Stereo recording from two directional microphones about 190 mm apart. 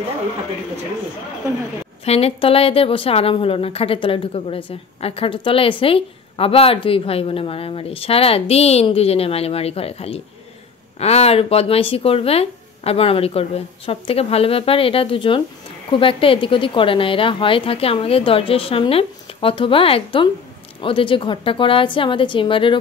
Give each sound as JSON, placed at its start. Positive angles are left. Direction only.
{"t": 2.0, "sound": "speech", "side_deg": 30}